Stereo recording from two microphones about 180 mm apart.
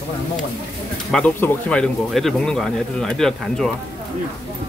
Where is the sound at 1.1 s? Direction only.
10° left (ahead or behind).